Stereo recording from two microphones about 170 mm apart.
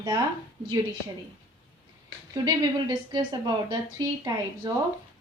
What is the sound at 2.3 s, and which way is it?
A woman's voice, 25° right (ahead or behind).